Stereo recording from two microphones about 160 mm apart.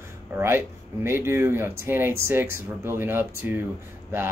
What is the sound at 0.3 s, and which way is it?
Speech, 15° right (ahead or behind).